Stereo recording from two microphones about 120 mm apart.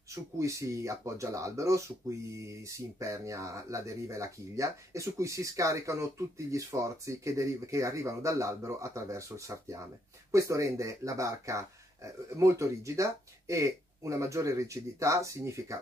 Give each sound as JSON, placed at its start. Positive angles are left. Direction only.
{"t": 0.1, "sound": "speech", "side_deg": -25}